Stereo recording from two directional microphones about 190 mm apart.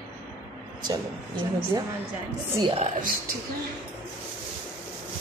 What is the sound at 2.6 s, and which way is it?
Speech, 30° right (ahead or behind).